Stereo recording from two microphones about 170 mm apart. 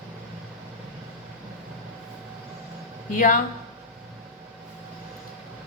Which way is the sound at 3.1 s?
50° left (ahead or behind).